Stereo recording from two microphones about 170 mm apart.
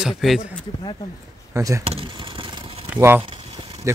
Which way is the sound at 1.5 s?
20° right (ahead or behind).